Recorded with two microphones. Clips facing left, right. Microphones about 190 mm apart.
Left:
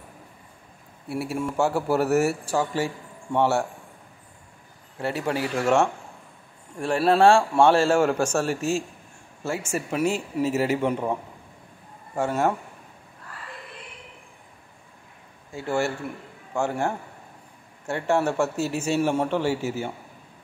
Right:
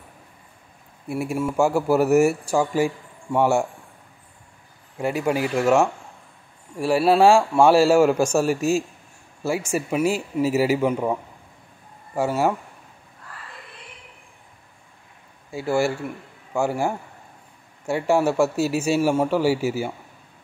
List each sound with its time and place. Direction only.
1.0 s a man's voice: 15° right (ahead or behind)
4.9 s a man's voice: 10° right (ahead or behind)
12.2 s a man's voice: 5° right (ahead or behind)
15.5 s a man's voice: 10° right (ahead or behind)